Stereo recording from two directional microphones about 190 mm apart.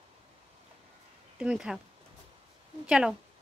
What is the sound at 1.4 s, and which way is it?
Speech, 5° right (ahead or behind).